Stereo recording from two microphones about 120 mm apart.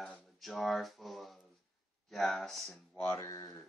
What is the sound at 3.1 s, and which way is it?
Speech, 25° left (ahead or behind).